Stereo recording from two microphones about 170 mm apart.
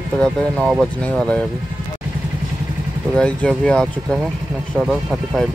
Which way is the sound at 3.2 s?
5° left (ahead or behind).